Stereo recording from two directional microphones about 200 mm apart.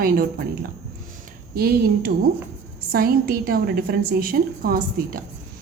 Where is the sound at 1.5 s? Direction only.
50° right (ahead or behind).